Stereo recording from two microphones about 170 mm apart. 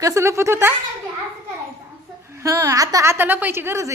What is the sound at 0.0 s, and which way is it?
Speech, 15° right (ahead or behind).